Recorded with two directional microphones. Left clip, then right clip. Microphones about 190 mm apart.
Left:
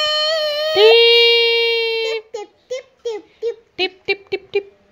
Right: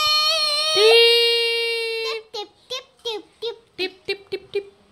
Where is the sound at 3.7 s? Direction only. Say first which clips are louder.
Left 7 dB; 25° left (ahead or behind).